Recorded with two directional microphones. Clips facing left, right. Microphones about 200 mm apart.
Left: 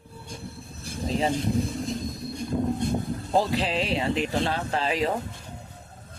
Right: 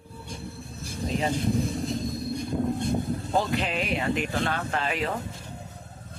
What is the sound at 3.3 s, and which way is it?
Speech, 30° left (ahead or behind).